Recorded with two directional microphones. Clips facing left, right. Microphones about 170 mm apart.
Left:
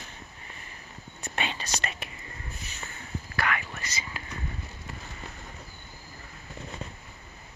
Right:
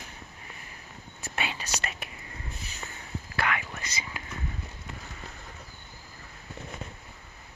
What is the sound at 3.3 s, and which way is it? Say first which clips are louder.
Whispering: even; 20° right (ahead or behind).